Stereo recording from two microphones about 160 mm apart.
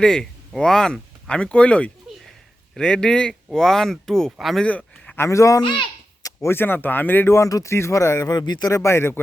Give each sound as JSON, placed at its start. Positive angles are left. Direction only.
{"t": 0.0, "sound": "speech", "side_deg": 5}
{"t": 4.8, "sound": "a sound", "side_deg": 0}
{"t": 5.1, "sound": "speech", "side_deg": 15}
{"t": 6.2, "sound": "speech", "side_deg": 15}